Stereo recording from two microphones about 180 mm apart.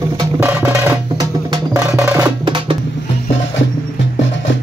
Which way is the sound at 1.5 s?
15° right (ahead or behind).